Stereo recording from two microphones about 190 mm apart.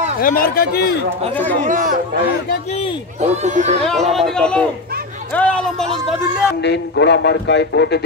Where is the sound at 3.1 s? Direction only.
35° right (ahead or behind).